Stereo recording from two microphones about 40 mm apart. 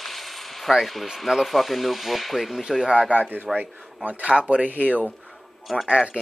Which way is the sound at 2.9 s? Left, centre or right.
Right.